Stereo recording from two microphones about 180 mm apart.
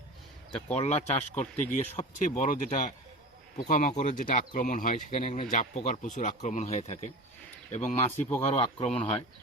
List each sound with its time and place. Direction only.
0.7 s speech: 40° left (ahead or behind)